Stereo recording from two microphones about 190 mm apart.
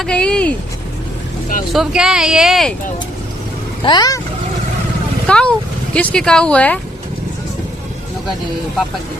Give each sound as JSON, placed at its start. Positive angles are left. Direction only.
{"t": 0.0, "sound": "a sound", "side_deg": 5}
{"t": 1.7, "sound": "speech", "side_deg": -5}
{"t": 3.8, "sound": "speech", "side_deg": 20}
{"t": 5.2, "sound": "speech", "side_deg": 5}